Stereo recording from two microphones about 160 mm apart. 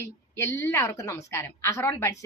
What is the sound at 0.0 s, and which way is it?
A woman's voice, 15° left (ahead or behind).